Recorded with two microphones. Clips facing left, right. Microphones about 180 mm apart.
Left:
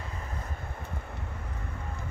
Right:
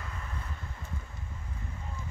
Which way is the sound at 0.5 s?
55° left (ahead or behind).